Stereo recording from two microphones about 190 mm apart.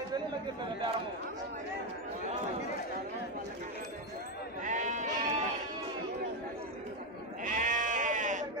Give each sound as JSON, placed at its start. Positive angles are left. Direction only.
{"t": 4.6, "sound": "sheep", "side_deg": -40}
{"t": 7.4, "sound": "sheep", "side_deg": -45}